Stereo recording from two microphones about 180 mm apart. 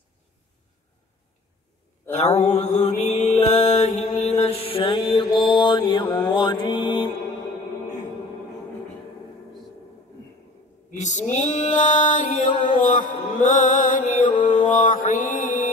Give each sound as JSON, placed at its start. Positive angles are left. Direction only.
{"t": 2.0, "sound": "mantra", "side_deg": 40}
{"t": 11.0, "sound": "a sound", "side_deg": 40}
{"t": 11.3, "sound": "female singing", "side_deg": 40}
{"t": 12.4, "sound": "music", "side_deg": 30}
{"t": 12.8, "sound": "mantra", "side_deg": 50}
{"t": 14.2, "sound": "music", "side_deg": 30}
{"t": 14.7, "sound": "mantra", "side_deg": 50}